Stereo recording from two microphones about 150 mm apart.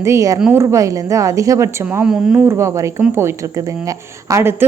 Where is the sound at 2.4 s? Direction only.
20° right (ahead or behind).